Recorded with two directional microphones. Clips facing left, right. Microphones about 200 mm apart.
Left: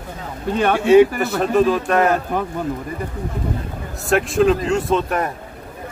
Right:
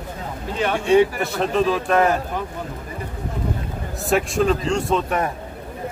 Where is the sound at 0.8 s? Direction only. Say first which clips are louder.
Left 5 dB; 5° left (ahead or behind).